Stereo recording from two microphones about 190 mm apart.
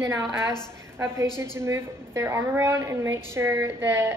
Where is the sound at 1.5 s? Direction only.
15° right (ahead or behind).